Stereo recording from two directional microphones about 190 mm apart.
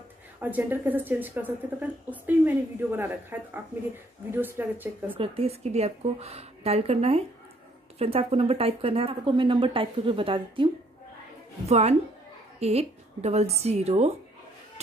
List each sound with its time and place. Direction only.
0.4 s a woman's voice: 10° right (ahead or behind)
5.1 s a woman's voice: 30° right (ahead or behind)
12.5 s a woman's voice: 35° right (ahead or behind)